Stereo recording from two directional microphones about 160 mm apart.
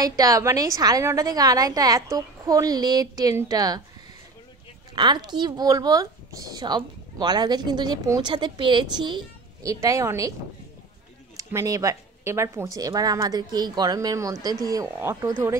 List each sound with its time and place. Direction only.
0.0 s speech: 25° right (ahead or behind)
4.9 s speech: 25° right (ahead or behind)
11.3 s speech: 20° right (ahead or behind)